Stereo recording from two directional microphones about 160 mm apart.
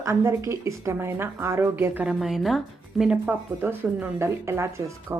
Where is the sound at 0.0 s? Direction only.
20° right (ahead or behind).